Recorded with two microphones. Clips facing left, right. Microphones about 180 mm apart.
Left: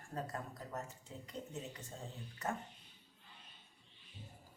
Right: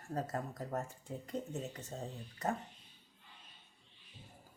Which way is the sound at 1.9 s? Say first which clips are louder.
Right 7 dB; 35° right (ahead or behind).